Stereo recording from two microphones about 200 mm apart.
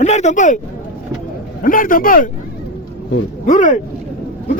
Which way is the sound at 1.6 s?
45° left (ahead or behind).